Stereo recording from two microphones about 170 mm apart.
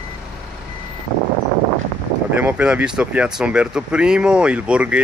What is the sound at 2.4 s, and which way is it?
Speech, 10° right (ahead or behind).